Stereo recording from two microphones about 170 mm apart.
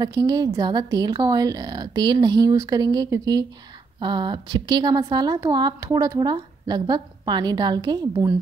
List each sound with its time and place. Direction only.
0.0 s a woman's voice: 25° right (ahead or behind)